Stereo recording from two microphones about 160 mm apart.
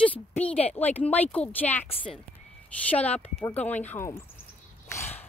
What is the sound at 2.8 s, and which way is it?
Speech, 10° left (ahead or behind).